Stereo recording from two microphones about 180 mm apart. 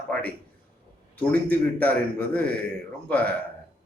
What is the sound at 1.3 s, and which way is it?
A man's voice, 10° left (ahead or behind).